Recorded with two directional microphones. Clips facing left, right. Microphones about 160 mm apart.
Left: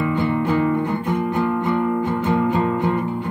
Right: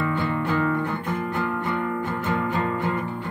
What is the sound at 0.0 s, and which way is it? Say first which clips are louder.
Music: left 5 dB; 15° left (ahead or behind).